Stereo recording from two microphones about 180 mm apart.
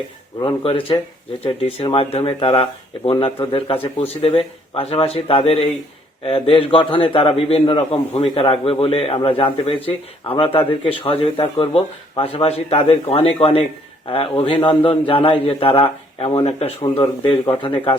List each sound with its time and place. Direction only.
0.3 s a man's voice: 30° left (ahead or behind)
17.0 s a man's voice: 25° left (ahead or behind)